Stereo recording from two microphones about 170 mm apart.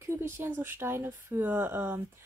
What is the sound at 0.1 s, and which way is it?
Speech, 15° right (ahead or behind).